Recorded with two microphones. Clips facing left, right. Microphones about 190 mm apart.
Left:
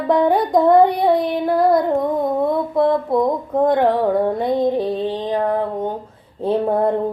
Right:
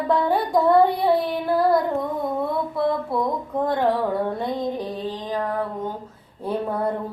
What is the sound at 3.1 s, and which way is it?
Child singing, 20° left (ahead or behind).